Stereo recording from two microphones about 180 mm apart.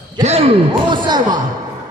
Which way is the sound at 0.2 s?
35° right (ahead or behind).